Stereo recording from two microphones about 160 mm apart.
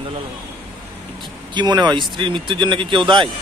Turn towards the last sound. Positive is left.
turn(degrees=-30)  # may be behind; listen again after turning